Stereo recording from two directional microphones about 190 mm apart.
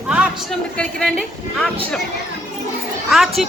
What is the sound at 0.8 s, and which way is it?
Speech, 5° left (ahead or behind).